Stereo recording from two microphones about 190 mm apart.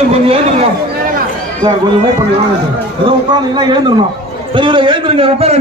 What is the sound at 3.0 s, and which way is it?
A man's voice, 25° right (ahead or behind).